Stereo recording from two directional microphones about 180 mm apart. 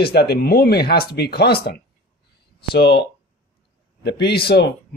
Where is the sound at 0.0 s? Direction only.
60° left (ahead or behind).